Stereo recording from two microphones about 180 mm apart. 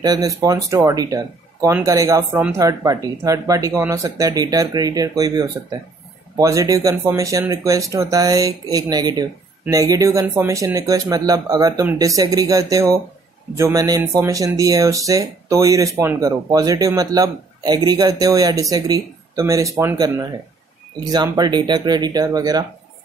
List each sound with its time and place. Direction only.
0.0 s speech: 20° right (ahead or behind)